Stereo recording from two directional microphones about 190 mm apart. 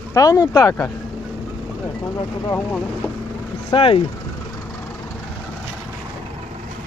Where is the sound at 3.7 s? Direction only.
30° left (ahead or behind).